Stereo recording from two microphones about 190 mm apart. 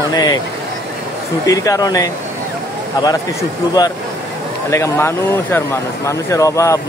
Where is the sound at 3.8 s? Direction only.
20° left (ahead or behind).